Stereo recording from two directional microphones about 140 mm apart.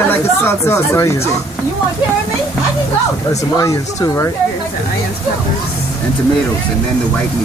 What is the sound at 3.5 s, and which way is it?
Speech, 25° left (ahead or behind).